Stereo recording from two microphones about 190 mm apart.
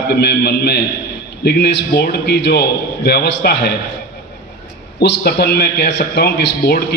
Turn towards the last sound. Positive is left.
turn(degrees=60)  # may be behind; listen again after turning